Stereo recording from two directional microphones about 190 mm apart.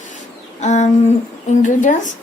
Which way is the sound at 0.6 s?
40° left (ahead or behind).